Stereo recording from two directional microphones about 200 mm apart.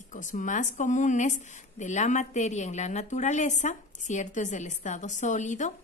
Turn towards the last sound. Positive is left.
turn(degrees=35)  # may be behind; listen again after turning